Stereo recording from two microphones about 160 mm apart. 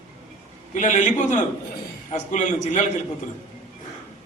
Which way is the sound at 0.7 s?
50° left (ahead or behind).